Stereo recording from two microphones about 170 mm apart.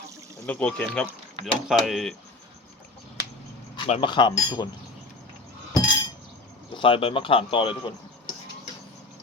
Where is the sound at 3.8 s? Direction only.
30° left (ahead or behind).